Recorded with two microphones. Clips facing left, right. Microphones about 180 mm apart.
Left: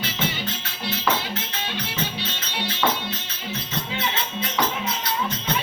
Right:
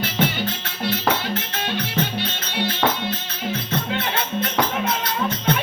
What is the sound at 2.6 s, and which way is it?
Music, 55° right (ahead or behind).